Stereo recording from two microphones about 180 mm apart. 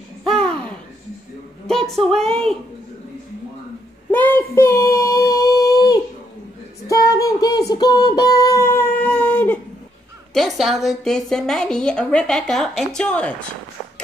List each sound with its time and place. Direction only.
0.3 s a sound: 5° left (ahead or behind)
4.1 s child singing: 10° left (ahead or behind)
10.3 s a woman's voice: centre (ahead or behind)